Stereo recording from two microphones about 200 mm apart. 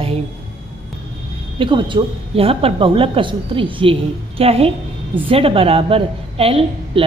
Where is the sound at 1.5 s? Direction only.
25° right (ahead or behind).